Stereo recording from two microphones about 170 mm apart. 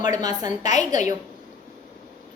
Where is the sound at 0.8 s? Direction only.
45° left (ahead or behind).